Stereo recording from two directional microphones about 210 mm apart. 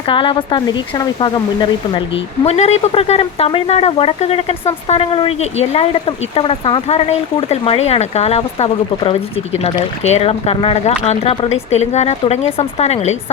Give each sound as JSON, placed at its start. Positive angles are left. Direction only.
{"t": 0.1, "sound": "speech", "side_deg": 25}
{"t": 2.4, "sound": "speech", "side_deg": 30}